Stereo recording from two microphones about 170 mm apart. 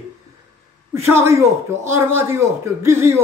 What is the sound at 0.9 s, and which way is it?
Speech, 15° right (ahead or behind).